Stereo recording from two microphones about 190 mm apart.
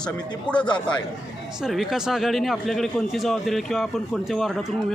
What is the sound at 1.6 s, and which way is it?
A man's voice, centre (ahead or behind).